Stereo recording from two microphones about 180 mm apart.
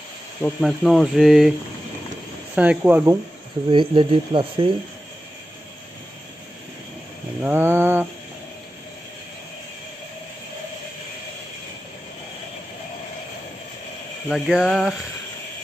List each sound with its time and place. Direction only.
0.4 s speech: centre (ahead or behind)
2.5 s speech: 10° right (ahead or behind)
3.7 s speech: 25° right (ahead or behind)
7.4 s speech: 10° right (ahead or behind)
14.3 s speech: centre (ahead or behind)